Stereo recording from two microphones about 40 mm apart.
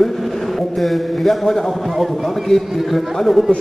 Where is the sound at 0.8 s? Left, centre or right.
Centre.